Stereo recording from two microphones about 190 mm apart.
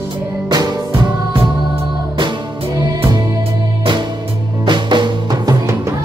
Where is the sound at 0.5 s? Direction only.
20° right (ahead or behind).